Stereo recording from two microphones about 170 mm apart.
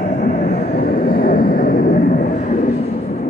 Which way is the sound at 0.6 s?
60° left (ahead or behind).